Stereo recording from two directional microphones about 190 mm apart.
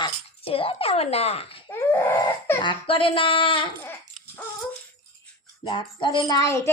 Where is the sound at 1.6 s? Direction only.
15° left (ahead or behind).